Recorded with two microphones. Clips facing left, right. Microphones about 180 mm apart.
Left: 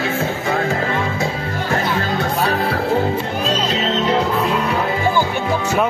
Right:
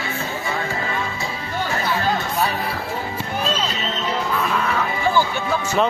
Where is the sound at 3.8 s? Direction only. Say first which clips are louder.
Left 7 dB; 70° left (ahead or behind).